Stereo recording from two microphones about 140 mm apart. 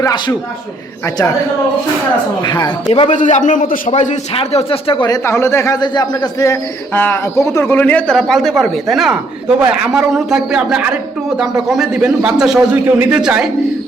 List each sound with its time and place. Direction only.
0.0 s a man's voice: 30° left (ahead or behind)
2.4 s speech: 30° left (ahead or behind)
3.1 s a man's voice: 60° left (ahead or behind); by 13.5 s 5° right (ahead or behind)